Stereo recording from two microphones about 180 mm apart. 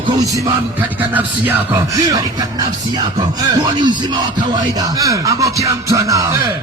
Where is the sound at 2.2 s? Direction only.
20° right (ahead or behind).